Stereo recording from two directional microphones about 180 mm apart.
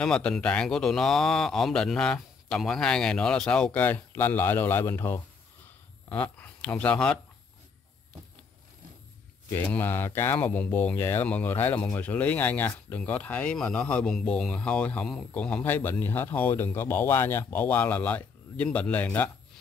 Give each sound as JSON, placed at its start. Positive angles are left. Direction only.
{"t": 0.0, "sound": "a man's voice", "side_deg": 5}
{"t": 9.5, "sound": "speech", "side_deg": 10}